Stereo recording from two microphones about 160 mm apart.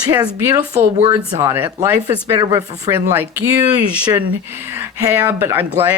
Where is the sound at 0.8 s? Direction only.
40° right (ahead or behind).